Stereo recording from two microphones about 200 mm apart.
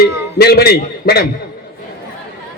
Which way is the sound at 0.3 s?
50° left (ahead or behind).